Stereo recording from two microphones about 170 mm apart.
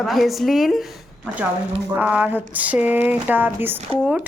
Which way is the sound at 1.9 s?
5° right (ahead or behind).